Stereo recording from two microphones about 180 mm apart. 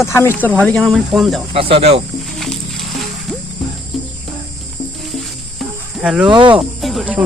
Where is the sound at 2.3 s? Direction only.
Centre (ahead or behind).